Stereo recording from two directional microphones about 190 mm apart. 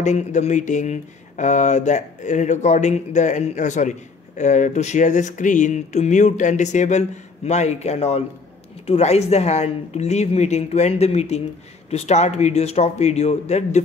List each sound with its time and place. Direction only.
0.0 s speech: 40° left (ahead or behind)